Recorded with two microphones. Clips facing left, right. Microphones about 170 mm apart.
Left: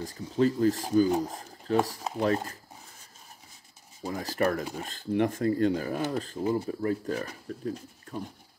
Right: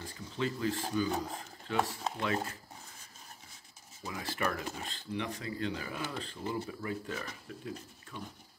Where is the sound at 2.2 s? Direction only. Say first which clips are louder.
Left 7 dB; 40° left (ahead or behind).